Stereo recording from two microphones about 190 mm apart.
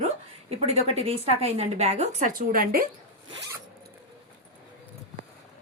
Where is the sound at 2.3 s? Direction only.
50° right (ahead or behind).